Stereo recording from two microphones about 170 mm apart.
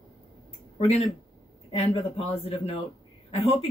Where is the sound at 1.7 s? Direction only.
35° left (ahead or behind).